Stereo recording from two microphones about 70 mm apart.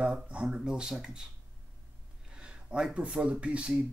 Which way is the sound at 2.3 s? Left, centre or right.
Centre.